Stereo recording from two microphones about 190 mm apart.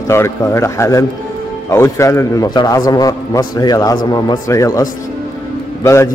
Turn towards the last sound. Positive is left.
turn(degrees=15)  # may be behind; listen again after turning